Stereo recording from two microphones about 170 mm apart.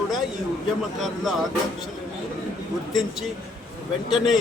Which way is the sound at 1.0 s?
Centre (ahead or behind).